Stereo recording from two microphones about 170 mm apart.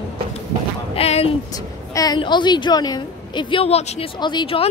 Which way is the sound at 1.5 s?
20° left (ahead or behind).